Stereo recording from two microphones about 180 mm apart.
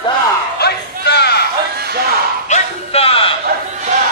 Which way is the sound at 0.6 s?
65° left (ahead or behind).